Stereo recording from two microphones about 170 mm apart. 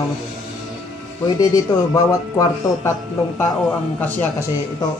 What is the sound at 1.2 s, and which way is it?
A man's voice, 20° left (ahead or behind).